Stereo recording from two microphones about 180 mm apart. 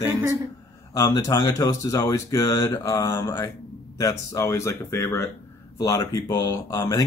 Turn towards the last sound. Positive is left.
turn(degrees=15)  # may be behind; listen again after turning